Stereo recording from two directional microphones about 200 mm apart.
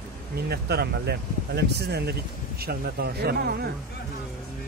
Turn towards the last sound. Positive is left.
turn(degrees=-50)  # may be behind; listen again after turning